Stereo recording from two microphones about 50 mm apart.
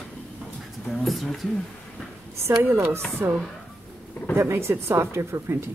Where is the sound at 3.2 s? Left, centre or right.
Right.